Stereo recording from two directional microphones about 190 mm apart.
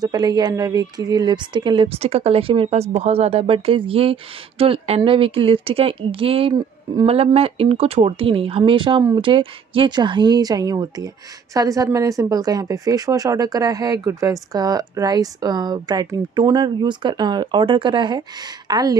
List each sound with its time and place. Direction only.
0.0 s speech: 20° right (ahead or behind)